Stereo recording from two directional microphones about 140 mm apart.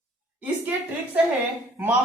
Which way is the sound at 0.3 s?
10° right (ahead or behind).